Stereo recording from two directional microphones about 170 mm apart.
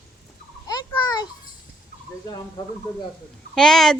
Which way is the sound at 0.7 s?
25° left (ahead or behind).